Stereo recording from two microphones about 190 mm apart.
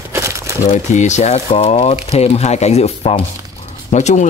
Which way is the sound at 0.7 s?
40° left (ahead or behind).